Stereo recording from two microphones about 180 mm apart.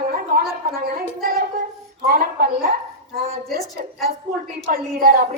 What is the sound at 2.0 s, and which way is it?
Speech, 55° right (ahead or behind).